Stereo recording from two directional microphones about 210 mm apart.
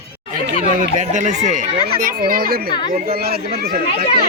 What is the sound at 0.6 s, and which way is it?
Speech, 35° right (ahead or behind).